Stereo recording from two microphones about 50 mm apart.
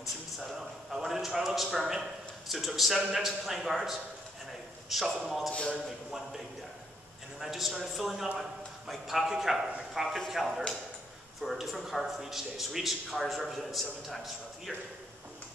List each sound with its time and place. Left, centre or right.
0.4 s a man's voice: centre
5.5 s a man's voice: left
5.9 s a man's voice: centre